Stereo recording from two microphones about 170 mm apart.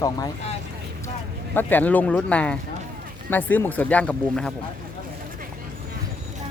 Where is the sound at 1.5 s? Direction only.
10° left (ahead or behind).